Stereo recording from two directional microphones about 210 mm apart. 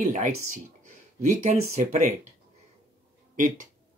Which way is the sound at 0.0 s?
35° right (ahead or behind).